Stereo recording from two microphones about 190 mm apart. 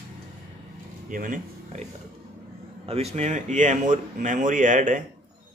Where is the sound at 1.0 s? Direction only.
45° right (ahead or behind).